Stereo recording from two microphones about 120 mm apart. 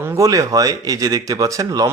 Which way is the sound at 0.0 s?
25° right (ahead or behind).